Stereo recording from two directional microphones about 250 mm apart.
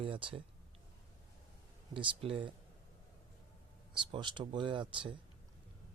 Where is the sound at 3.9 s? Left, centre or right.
Centre.